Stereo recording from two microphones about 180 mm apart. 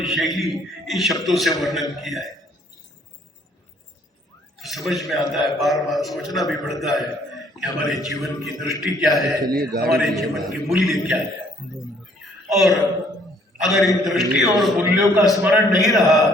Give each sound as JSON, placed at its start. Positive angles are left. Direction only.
{"t": 0.0, "sound": "a man's voice", "side_deg": 0}
{"t": 4.5, "sound": "a man's voice", "side_deg": 0}
{"t": 9.5, "sound": "a man's voice", "side_deg": -55}
{"t": 9.9, "sound": "a man's voice", "side_deg": 0}
{"t": 12.2, "sound": "a sound", "side_deg": 0}
{"t": 13.6, "sound": "a man's voice", "side_deg": 0}